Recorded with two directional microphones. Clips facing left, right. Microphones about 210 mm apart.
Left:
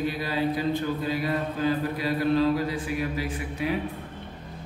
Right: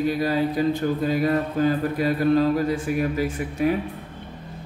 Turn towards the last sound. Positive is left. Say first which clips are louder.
# right 6 dB
turn(degrees=-45)  # may be behind; listen again after turning